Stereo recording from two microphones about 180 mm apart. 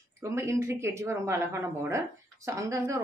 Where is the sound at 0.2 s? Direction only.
15° right (ahead or behind).